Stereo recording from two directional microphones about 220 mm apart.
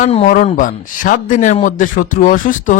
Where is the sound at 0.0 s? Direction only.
30° left (ahead or behind).